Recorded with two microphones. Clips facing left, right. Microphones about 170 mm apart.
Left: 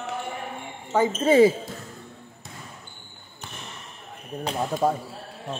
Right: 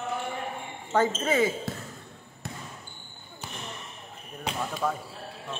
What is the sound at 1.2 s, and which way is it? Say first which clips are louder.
Speech: left 8 dB; 30° left (ahead or behind).